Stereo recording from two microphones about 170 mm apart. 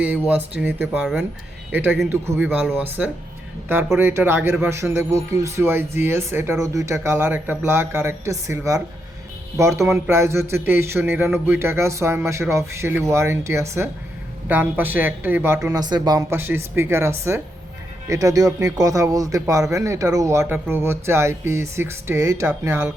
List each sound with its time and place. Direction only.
0.3 s a man's voice: 10° right (ahead or behind)
9.9 s a man's voice: 15° right (ahead or behind)